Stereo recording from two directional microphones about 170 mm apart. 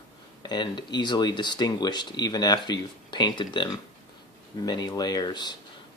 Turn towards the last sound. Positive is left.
turn(degrees=25)  # may be behind; listen again after turning